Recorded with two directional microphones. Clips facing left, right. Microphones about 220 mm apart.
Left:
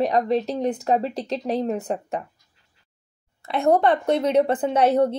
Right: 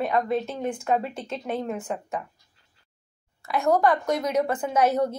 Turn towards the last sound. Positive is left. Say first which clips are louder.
# left 4 dB
turn(degrees=30)  # may be behind; listen again after turning